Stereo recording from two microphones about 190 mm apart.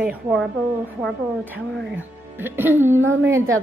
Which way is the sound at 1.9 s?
10° right (ahead or behind).